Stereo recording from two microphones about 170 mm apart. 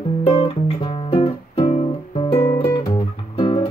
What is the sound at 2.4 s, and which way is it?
Guitar, 15° left (ahead or behind).